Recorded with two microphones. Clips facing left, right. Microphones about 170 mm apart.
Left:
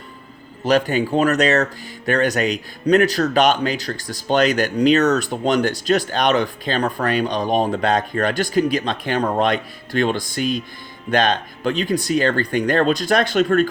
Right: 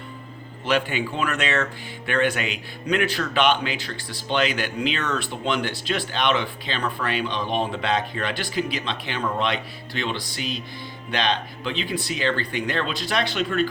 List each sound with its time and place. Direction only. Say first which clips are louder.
0.6 s speech: left 6 dB; 40° left (ahead or behind)